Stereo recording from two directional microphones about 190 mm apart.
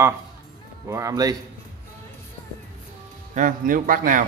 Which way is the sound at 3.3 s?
45° right (ahead or behind).